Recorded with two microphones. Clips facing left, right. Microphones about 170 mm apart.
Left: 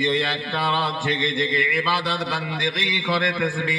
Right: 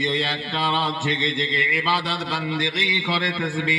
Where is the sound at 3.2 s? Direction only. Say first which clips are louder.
Left 1 dB; 50° left (ahead or behind).